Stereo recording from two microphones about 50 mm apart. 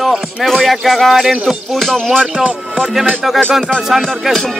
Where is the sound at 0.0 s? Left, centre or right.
Centre.